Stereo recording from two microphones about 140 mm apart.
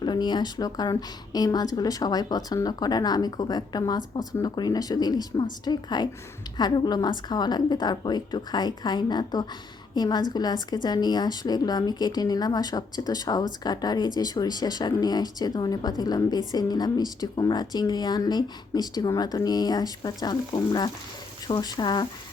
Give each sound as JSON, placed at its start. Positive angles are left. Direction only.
{"t": 0.0, "sound": "a woman's voice", "side_deg": 30}